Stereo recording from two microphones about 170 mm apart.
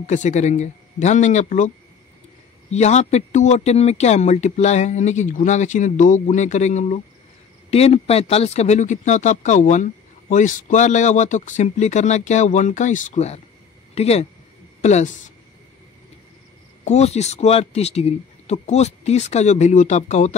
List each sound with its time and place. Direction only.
0.0 s speech: 45° left (ahead or behind)
2.7 s speech: 40° left (ahead or behind)
16.8 s speech: 40° left (ahead or behind)